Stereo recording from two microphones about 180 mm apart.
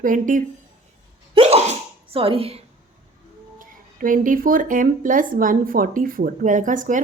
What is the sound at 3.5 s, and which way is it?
Speech, 50° right (ahead or behind).